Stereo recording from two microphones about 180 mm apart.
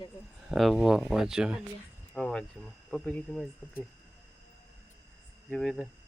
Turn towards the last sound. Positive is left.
turn(degrees=0)  # may be behind; listen again after turning